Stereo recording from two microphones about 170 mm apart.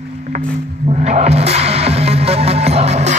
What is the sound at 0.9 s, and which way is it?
Music, 40° right (ahead or behind).